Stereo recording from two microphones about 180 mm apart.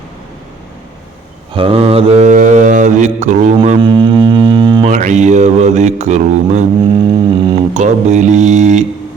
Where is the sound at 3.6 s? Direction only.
30° right (ahead or behind).